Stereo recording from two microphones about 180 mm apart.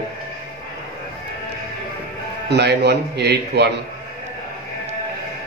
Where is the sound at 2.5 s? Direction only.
65° right (ahead or behind).